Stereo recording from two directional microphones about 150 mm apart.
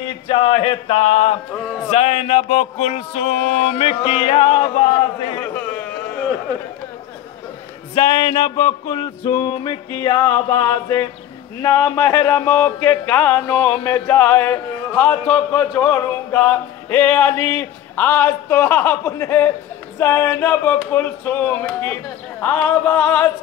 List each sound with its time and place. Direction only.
0.3 s male singing: 35° left (ahead or behind)
1.9 s music: 45° left (ahead or behind)
5.4 s a sound: 10° left (ahead or behind)
7.9 s music: 30° left (ahead or behind)
8.8 s male singing: 35° left (ahead or behind)
9.2 s music: 25° left (ahead or behind)
11.6 s speech: 20° left (ahead or behind)